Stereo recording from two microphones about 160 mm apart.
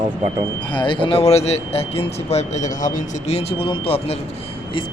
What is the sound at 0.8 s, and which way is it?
Speech, 30° left (ahead or behind).